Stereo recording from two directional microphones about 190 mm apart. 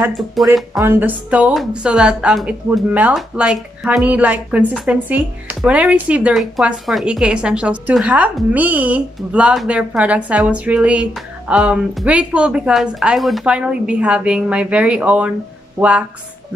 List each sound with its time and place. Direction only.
0.4 s speech: centre (ahead or behind)
0.7 s speech: 10° right (ahead or behind)